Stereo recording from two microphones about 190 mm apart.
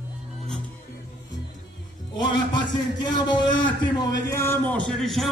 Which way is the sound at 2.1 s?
25° left (ahead or behind).